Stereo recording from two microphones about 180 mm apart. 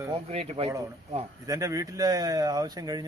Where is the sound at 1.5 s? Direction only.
20° right (ahead or behind).